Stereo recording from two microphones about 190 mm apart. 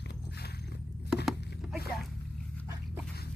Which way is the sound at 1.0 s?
5° right (ahead or behind).